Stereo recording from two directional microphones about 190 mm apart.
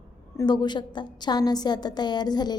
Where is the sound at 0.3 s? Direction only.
20° left (ahead or behind).